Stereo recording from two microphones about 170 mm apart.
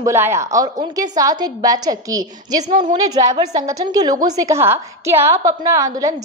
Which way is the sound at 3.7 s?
20° right (ahead or behind).